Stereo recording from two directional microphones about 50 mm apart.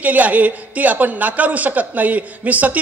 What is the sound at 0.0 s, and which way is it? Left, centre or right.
A man's voice, right.